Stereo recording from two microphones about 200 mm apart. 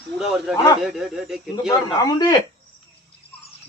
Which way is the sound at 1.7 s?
20° left (ahead or behind).